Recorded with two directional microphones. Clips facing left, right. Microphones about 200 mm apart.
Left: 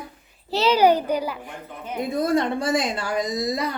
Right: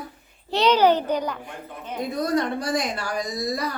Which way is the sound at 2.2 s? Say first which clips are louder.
Left 2 dB; 25° left (ahead or behind).